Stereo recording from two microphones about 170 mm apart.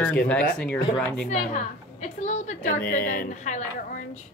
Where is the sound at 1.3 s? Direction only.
45° left (ahead or behind).